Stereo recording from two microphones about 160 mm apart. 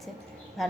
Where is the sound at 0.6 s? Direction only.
Centre (ahead or behind).